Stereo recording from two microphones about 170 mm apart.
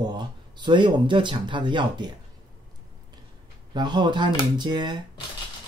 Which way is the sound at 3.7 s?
25° right (ahead or behind).